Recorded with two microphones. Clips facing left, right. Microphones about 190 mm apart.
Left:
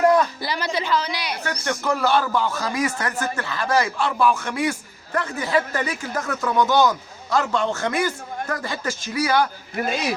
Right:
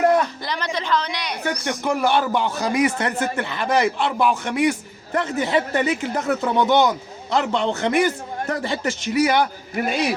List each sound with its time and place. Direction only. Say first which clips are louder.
0.4 s a woman's voice: left 1 dB; 5° left (ahead or behind)
1.6 s speech: even; 15° right (ahead or behind)